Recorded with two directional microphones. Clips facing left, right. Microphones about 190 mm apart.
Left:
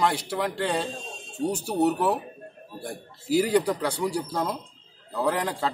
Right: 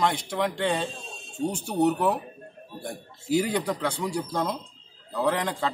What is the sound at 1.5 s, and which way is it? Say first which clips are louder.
Speech: left 1 dB; 35° left (ahead or behind).